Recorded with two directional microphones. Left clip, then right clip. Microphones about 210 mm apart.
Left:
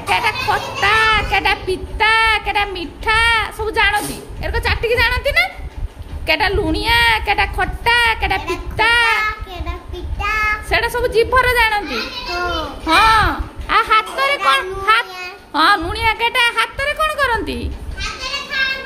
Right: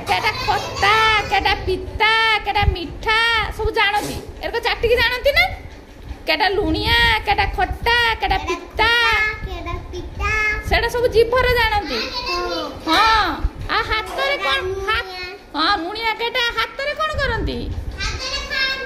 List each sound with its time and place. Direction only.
0.0 s a child's voice: 25° left (ahead or behind)
12.8 s a child's voice: 25° left (ahead or behind)